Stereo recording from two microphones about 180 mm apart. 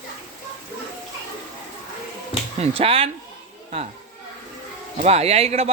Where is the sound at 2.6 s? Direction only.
30° right (ahead or behind).